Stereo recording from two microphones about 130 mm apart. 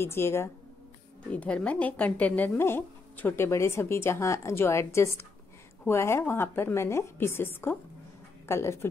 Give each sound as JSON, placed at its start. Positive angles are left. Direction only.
{"t": 0.0, "sound": "speech", "side_deg": 20}